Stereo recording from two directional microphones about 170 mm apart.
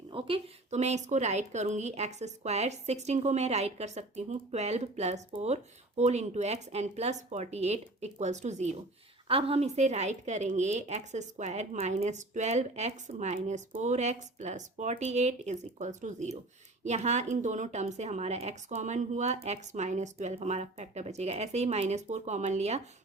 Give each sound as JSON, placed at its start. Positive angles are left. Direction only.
{"t": 0.1, "sound": "a woman's voice", "side_deg": -30}